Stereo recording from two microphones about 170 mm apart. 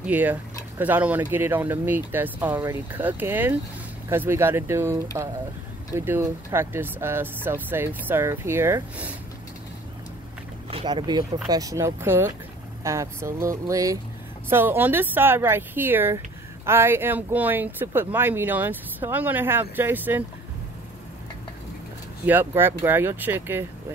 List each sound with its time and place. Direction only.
0.0 s speech: 10° right (ahead or behind)
10.7 s speech: 30° right (ahead or behind); by 20.2 s 10° right (ahead or behind)
22.2 s speech: 10° right (ahead or behind)